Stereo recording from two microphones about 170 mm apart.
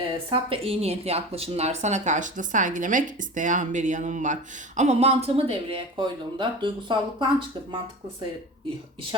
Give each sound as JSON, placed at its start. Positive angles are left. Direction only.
{"t": 0.3, "sound": "speech", "side_deg": -35}